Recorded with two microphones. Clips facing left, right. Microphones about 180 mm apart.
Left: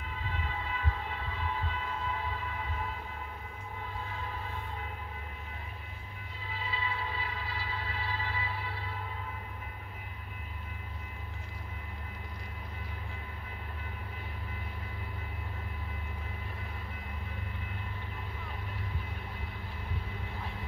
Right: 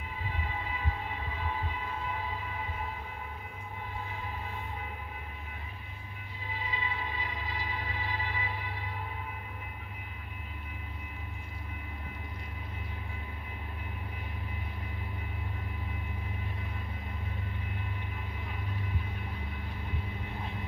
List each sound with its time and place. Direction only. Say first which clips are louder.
0.3 s train: even; 15° right (ahead or behind)
6.5 s music: even; 15° right (ahead or behind)